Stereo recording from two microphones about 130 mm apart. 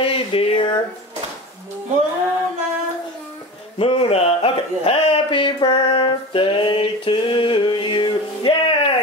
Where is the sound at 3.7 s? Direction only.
50° left (ahead or behind).